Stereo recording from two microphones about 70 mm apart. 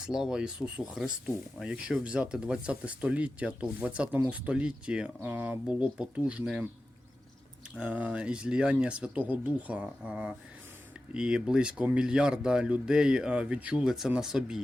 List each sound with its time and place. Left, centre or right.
0.0 s speech: centre
7.8 s speech: right
13.8 s speech: centre